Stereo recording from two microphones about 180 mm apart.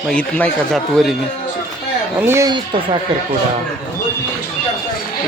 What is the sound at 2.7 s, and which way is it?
Speech, 25° right (ahead or behind).